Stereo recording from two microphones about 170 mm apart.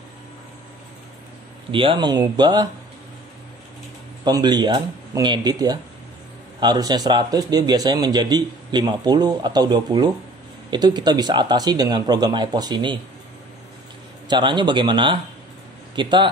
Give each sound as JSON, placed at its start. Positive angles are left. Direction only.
{"t": 1.7, "sound": "speech", "side_deg": -30}
{"t": 4.2, "sound": "speech", "side_deg": -25}
{"t": 14.3, "sound": "speech", "side_deg": -25}